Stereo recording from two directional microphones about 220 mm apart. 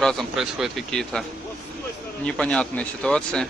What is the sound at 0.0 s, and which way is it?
Speech, centre (ahead or behind).